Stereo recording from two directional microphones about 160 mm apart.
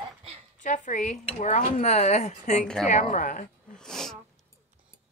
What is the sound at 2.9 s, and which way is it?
Speech, 50° left (ahead or behind).